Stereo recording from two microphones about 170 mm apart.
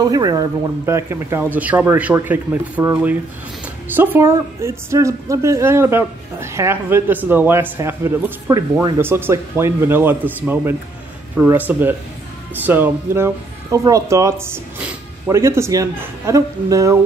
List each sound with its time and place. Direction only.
0.0 s speech: 20° right (ahead or behind)